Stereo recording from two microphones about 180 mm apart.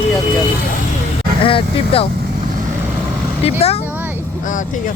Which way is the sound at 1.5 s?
30° left (ahead or behind).